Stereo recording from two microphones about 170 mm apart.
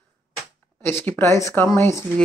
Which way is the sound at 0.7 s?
10° left (ahead or behind).